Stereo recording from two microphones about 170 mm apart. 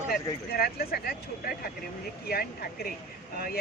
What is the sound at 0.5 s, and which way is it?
Speech, 60° left (ahead or behind).